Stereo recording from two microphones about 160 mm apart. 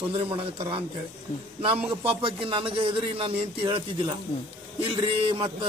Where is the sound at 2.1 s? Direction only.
30° right (ahead or behind).